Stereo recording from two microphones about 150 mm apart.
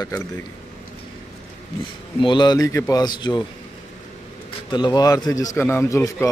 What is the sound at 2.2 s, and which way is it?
A man's voice, 30° left (ahead or behind).